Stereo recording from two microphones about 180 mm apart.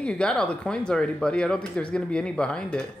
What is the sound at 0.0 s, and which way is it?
Speech, 5° left (ahead or behind).